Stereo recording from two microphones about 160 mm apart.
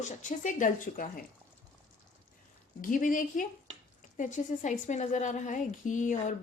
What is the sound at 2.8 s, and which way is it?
A woman's voice, 55° left (ahead or behind).